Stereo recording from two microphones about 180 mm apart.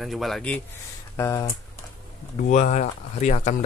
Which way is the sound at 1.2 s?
15° left (ahead or behind).